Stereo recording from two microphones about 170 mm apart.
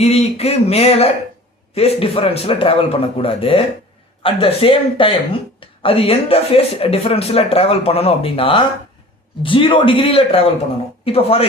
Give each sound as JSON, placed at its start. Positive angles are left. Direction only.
{"t": 0.0, "sound": "speech", "side_deg": 40}